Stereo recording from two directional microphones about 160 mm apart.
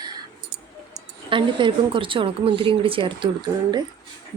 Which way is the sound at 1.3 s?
30° right (ahead or behind).